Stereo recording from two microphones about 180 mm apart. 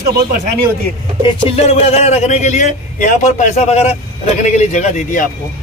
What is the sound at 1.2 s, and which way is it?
A man's voice, 30° left (ahead or behind).